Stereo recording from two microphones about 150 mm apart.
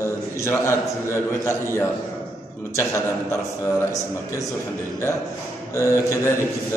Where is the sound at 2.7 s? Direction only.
20° left (ahead or behind).